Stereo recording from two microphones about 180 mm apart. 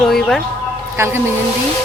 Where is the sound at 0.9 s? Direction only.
15° right (ahead or behind).